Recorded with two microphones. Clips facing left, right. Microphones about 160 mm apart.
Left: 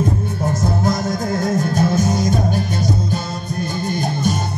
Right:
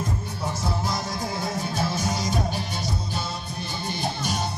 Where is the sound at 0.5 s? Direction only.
50° left (ahead or behind).